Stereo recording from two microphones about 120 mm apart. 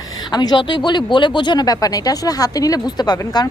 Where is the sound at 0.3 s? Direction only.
35° left (ahead or behind).